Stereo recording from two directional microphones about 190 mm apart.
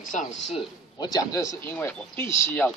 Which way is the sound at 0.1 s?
40° left (ahead or behind).